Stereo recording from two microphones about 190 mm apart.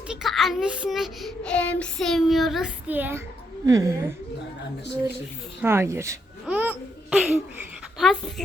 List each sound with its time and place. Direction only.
0.1 s child singing: centre (ahead or behind)
3.7 s speech: 15° right (ahead or behind)
5.6 s speech: 15° right (ahead or behind)
6.4 s babbling: 5° right (ahead or behind)
7.9 s a sound: centre (ahead or behind)